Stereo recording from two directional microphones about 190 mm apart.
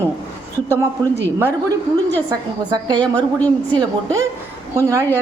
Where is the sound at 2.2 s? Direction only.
20° right (ahead or behind).